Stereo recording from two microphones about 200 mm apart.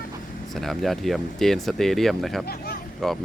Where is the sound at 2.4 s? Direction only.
50° left (ahead or behind).